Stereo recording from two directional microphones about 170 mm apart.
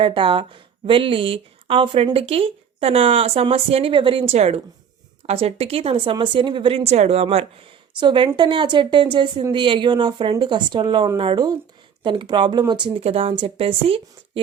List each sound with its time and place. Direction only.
0.0 s a woman's voice: 30° right (ahead or behind)